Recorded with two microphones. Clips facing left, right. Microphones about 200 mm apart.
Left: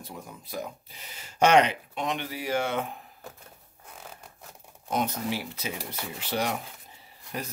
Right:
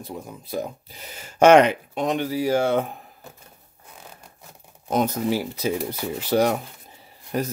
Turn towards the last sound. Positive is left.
turn(degrees=-45)  # may be behind; listen again after turning